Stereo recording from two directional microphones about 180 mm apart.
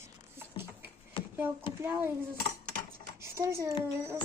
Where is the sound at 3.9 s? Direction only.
15° right (ahead or behind).